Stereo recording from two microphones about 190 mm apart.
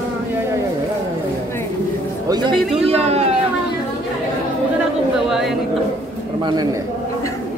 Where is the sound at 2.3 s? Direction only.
25° right (ahead or behind).